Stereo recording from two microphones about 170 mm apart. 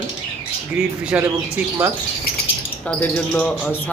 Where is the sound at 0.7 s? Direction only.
10° right (ahead or behind).